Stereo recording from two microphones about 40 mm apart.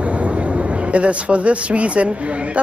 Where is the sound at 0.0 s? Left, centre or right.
Right.